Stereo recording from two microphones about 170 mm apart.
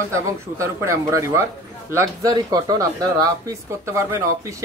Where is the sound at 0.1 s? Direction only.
15° right (ahead or behind).